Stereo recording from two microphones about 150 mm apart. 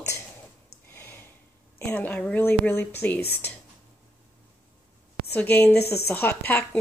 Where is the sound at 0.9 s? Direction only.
15° left (ahead or behind).